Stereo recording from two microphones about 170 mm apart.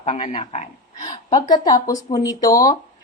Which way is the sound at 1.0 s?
25° left (ahead or behind).